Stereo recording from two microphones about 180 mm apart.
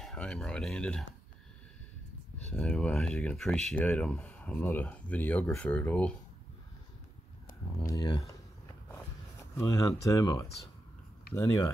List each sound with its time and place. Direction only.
0.0 s speech: 5° left (ahead or behind)
2.3 s speech: 5° left (ahead or behind)
7.8 s speech: 20° left (ahead or behind)
9.6 s speech: 20° left (ahead or behind)